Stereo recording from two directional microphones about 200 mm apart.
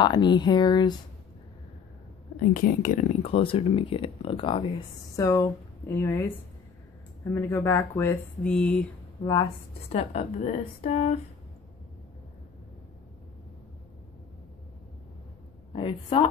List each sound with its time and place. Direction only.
0.0 s speech: 20° left (ahead or behind)
2.5 s speech: 45° left (ahead or behind)
3.2 s speech: 25° left (ahead or behind); by 6.2 s 10° left (ahead or behind)
7.2 s speech: 15° left (ahead or behind)
9.2 s speech: 20° left (ahead or behind)
9.8 s speech: 30° left (ahead or behind)
15.7 s speech: 25° left (ahead or behind)